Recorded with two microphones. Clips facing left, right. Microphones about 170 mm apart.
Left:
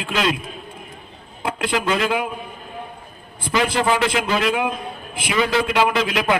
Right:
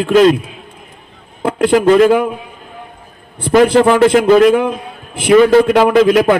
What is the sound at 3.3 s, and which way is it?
A man's voice, 60° right (ahead or behind).